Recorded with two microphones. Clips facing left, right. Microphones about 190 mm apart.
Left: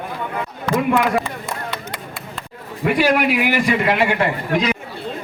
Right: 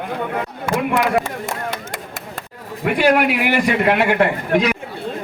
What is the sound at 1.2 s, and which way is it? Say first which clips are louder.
Clapping: right 2 dB; 45° right (ahead or behind).